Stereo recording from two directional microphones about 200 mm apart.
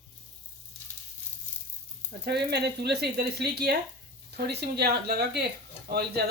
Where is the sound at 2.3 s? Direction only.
55° right (ahead or behind).